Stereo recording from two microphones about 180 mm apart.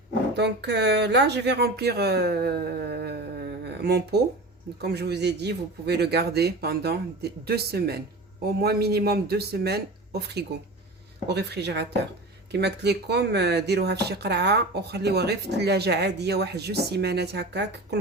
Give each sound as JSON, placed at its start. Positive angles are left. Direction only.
{"t": 0.3, "sound": "speech", "side_deg": -70}